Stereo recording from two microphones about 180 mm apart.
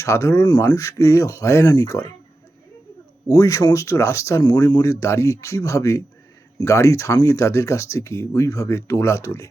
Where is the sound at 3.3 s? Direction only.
20° left (ahead or behind).